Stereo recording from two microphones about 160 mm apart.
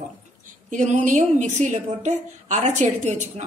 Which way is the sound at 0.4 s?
55° right (ahead or behind).